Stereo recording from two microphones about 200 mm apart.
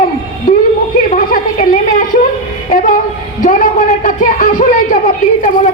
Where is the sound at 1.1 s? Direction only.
40° left (ahead or behind).